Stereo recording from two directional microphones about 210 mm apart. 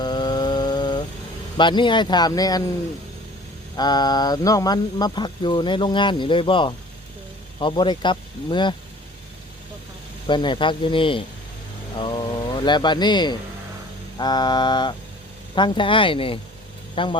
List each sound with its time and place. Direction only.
0.0 s a sound: 20° left (ahead or behind)
1.5 s speech: 20° left (ahead or behind)
3.8 s speech: 20° left (ahead or behind)
10.2 s speech: 20° left (ahead or behind)